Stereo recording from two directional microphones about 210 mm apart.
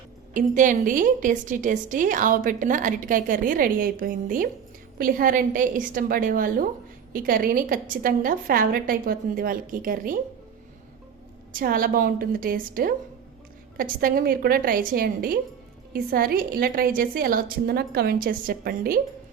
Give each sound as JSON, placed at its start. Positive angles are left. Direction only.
{"t": 0.3, "sound": "a woman's voice", "side_deg": -40}
{"t": 11.5, "sound": "a woman's voice", "side_deg": -40}